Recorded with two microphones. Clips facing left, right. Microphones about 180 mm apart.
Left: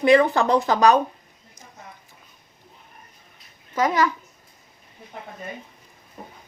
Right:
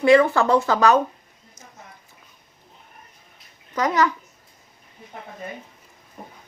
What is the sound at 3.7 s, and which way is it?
Speech, 10° left (ahead or behind).